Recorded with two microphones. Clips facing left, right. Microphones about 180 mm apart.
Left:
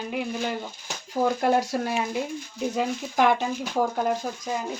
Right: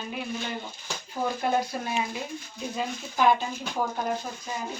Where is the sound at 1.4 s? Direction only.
80° left.